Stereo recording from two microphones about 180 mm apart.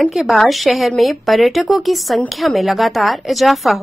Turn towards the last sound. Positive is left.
turn(degrees=0)  # may be behind; listen again after turning